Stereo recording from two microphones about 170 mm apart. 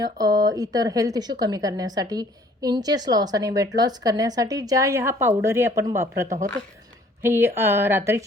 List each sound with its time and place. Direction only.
0.0 s speech: 20° right (ahead or behind)